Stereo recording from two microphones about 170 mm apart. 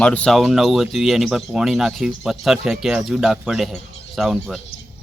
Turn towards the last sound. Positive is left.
turn(degrees=0)  # may be behind; listen again after turning